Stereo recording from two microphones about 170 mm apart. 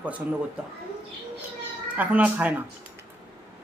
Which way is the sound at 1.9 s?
10° right (ahead or behind).